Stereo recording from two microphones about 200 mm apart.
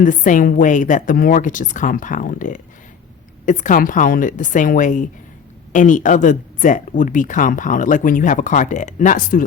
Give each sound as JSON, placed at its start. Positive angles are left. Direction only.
{"t": 0.0, "sound": "speech", "side_deg": 40}